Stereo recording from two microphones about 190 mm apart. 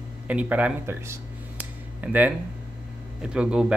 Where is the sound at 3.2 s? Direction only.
5° right (ahead or behind).